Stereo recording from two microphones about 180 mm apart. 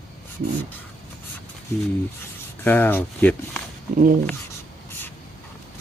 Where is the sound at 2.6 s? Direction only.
10° left (ahead or behind).